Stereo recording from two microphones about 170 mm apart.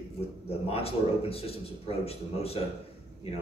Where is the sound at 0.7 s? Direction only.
35° left (ahead or behind).